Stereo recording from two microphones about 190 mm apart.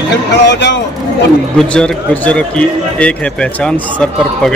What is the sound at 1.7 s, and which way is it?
Speech, 5° left (ahead or behind).